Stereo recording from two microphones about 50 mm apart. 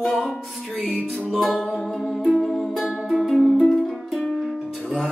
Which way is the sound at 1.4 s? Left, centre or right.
Centre.